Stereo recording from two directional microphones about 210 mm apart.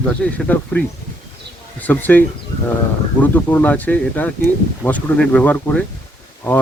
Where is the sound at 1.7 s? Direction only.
10° left (ahead or behind).